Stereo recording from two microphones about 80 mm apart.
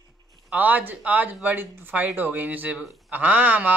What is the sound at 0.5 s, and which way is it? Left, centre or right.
Speech, right.